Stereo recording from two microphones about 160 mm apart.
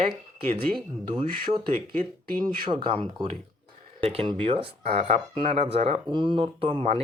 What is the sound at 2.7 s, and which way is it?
Speech, 30° right (ahead or behind).